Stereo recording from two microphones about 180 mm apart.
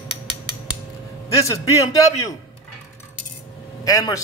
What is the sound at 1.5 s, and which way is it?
Speech, 20° left (ahead or behind).